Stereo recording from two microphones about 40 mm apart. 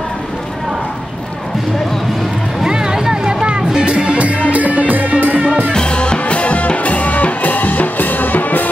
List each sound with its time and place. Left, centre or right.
2.6 s music: centre; by 5.5 s right
5.7 s music: left